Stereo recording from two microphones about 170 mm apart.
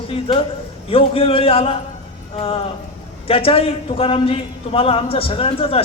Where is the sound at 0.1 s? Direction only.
35° left (ahead or behind).